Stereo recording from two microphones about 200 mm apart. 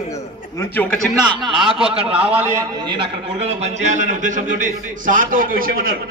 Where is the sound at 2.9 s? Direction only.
30° right (ahead or behind).